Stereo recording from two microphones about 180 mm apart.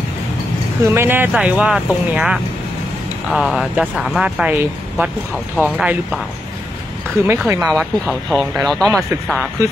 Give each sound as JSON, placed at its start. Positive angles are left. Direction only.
{"t": 0.9, "sound": "speech", "side_deg": -10}
{"t": 7.2, "sound": "speech", "side_deg": -15}
{"t": 7.6, "sound": "speech", "side_deg": 0}